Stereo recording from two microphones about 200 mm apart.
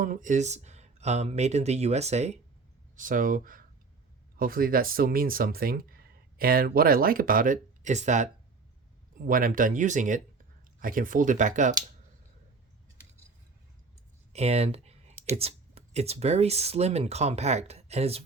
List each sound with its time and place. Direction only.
0.0 s speech: 40° right (ahead or behind)
14.3 s speech: 30° right (ahead or behind)